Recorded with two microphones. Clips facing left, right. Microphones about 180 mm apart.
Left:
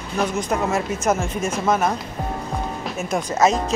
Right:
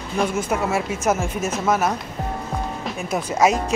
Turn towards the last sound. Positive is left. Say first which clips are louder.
# even
turn(degrees=-10)  # may be behind; listen again after turning